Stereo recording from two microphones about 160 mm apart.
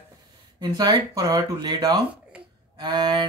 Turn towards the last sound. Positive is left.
turn(degrees=-30)  # may be behind; listen again after turning